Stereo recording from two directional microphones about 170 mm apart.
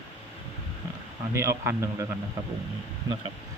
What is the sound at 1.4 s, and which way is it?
Speech, 15° right (ahead or behind).